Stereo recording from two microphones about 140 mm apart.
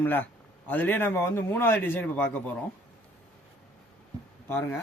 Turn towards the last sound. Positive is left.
turn(degrees=15)  # may be behind; listen again after turning